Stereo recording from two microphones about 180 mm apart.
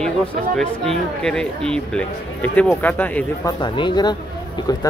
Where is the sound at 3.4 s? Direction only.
25° left (ahead or behind).